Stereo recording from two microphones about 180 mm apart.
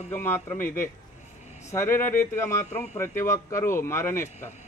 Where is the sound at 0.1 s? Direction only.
10° left (ahead or behind).